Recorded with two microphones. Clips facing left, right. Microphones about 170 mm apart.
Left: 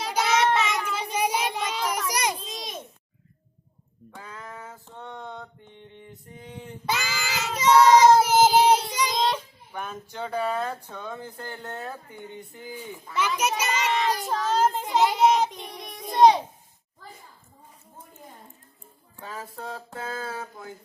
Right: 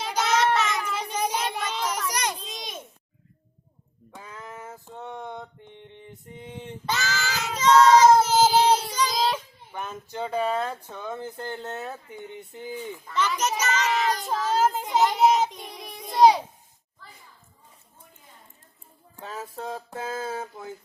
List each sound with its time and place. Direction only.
0.0 s child singing: 5° left (ahead or behind)
2.5 s a sound: centre (ahead or behind)
4.1 s a sound: 20° right (ahead or behind)
6.8 s child singing: 5° left (ahead or behind)
9.1 s a sound: 5° right (ahead or behind)
10.1 s speech: 20° right (ahead or behind)
13.1 s a child's voice: 10° left (ahead or behind)
14.3 s a child's voice: 5° right (ahead or behind)
15.0 s child singing: centre (ahead or behind)
19.1 s speech: 20° right (ahead or behind)